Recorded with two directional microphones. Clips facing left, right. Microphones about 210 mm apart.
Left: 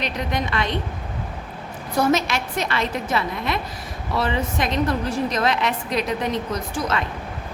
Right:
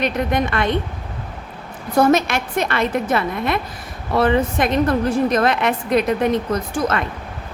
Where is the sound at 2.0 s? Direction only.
55° right (ahead or behind).